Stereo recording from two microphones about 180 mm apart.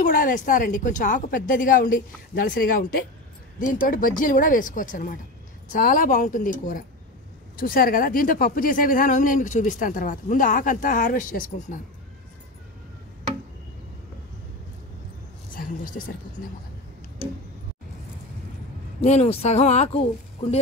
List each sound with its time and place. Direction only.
0.0 s speech: 50° left (ahead or behind)
15.5 s a sound: 50° left (ahead or behind)
18.9 s speech: 35° left (ahead or behind)